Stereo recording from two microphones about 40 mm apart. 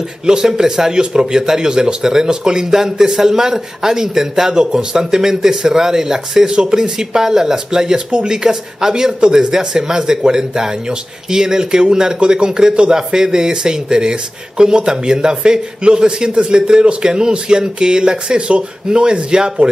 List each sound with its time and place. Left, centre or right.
0.3 s a man's voice: centre